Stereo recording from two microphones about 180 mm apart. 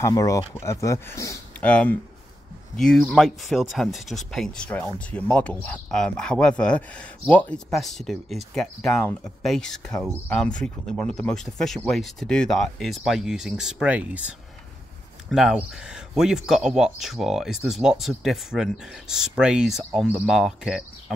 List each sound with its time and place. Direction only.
0.0 s speech: 20° left (ahead or behind); by 20.8 s 5° right (ahead or behind)